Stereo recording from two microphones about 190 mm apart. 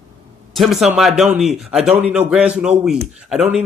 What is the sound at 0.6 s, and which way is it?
Speech, centre (ahead or behind).